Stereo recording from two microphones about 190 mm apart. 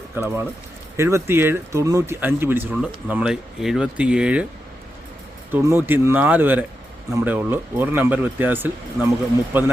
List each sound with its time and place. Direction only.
0.1 s speech: 10° right (ahead or behind)
5.5 s speech: 15° right (ahead or behind)